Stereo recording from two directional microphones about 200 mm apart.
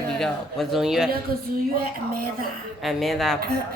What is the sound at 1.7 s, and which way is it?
Speech, 45° right (ahead or behind).